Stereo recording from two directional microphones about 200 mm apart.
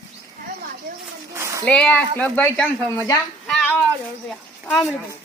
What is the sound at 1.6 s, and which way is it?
Speech, 5° left (ahead or behind).